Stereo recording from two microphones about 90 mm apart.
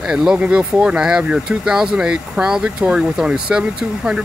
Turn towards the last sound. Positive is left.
turn(degrees=-10)  # may be behind; listen again after turning